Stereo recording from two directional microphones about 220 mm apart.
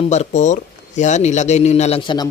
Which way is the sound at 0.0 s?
30° left (ahead or behind).